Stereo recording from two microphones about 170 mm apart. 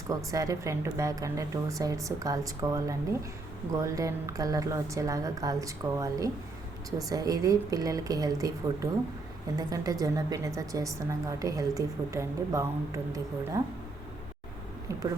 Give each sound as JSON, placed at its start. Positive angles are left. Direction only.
{"t": 0.1, "sound": "a woman's voice", "side_deg": -20}